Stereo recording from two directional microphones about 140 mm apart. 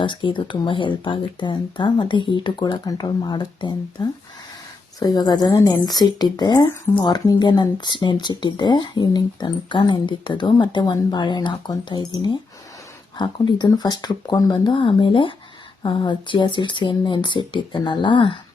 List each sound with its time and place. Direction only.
0.0 s speech: 35° left (ahead or behind)